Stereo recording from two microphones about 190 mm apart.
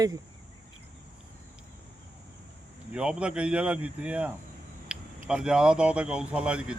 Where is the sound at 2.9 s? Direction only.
5° right (ahead or behind).